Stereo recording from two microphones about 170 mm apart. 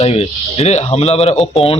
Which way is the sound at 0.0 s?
35° left (ahead or behind).